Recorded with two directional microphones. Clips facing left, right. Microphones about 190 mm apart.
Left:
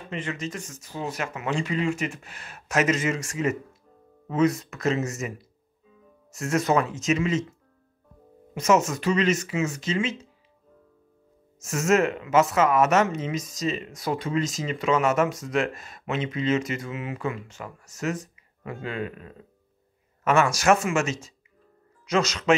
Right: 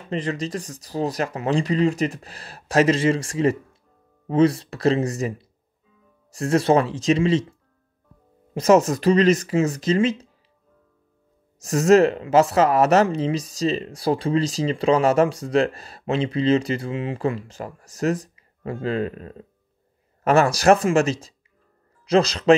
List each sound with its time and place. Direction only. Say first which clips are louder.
0.1 s speech: right 6 dB; 35° right (ahead or behind)
8.5 s speech: right 5 dB; 35° right (ahead or behind)
11.6 s speech: right 7 dB; 35° right (ahead or behind)